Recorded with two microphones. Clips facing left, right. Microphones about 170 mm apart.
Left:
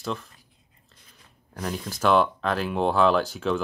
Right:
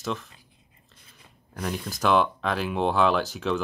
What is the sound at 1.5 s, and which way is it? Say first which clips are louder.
Speech: even; centre (ahead or behind).